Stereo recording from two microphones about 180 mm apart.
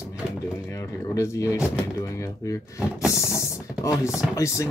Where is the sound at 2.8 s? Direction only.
5° right (ahead or behind).